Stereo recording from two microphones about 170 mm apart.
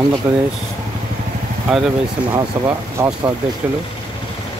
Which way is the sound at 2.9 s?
20° right (ahead or behind).